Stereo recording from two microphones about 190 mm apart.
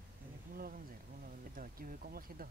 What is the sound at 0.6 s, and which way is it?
Speech, 50° right (ahead or behind).